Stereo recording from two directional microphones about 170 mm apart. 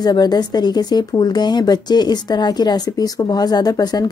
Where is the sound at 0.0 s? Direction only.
25° left (ahead or behind).